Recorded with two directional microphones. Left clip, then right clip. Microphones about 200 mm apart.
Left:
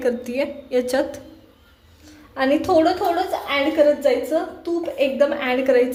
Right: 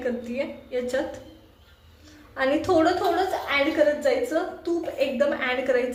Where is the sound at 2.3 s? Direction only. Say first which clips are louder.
Left 4 dB; 25° left (ahead or behind).